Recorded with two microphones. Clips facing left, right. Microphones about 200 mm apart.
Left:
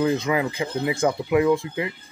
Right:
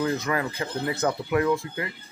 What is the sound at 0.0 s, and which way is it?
Speech, 15° left (ahead or behind).